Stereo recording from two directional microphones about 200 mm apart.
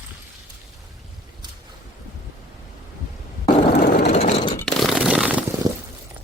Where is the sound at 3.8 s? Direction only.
50° left (ahead or behind).